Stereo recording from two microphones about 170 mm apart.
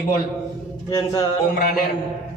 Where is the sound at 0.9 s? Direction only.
20° left (ahead or behind).